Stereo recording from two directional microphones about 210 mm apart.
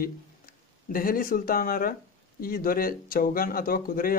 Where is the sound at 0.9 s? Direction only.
40° left (ahead or behind).